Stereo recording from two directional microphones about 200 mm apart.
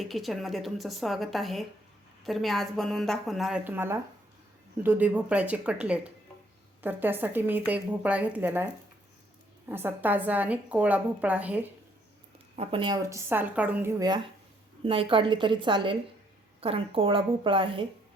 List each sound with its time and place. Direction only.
0.0 s a woman's voice: centre (ahead or behind)
6.8 s a woman's voice: 10° right (ahead or behind)
9.6 s a woman's voice: 10° right (ahead or behind)
12.5 s a woman's voice: 25° right (ahead or behind); by 13.9 s 10° right (ahead or behind)
14.8 s a woman's voice: 25° right (ahead or behind)